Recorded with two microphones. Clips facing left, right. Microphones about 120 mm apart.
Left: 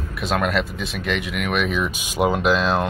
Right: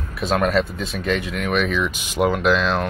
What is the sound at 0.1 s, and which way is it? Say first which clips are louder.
Speech: right 3 dB; centre (ahead or behind).